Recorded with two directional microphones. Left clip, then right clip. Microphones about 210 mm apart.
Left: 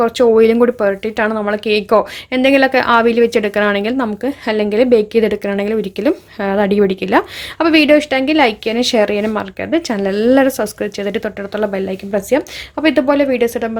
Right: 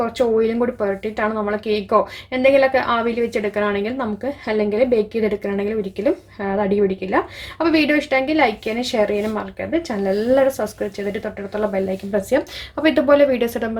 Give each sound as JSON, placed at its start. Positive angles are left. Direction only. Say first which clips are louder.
{"t": 0.0, "sound": "a woman's voice", "louder": "left 8 dB", "side_deg": 40}